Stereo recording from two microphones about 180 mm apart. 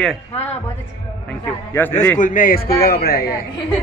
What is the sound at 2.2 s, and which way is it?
A man's voice, 45° left (ahead or behind).